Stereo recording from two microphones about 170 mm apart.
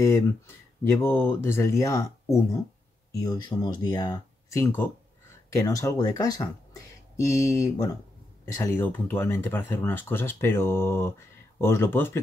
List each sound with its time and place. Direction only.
0.8 s speech: 15° left (ahead or behind)